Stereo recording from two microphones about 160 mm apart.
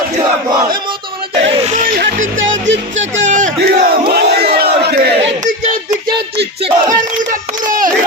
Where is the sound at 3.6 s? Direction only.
70° right (ahead or behind).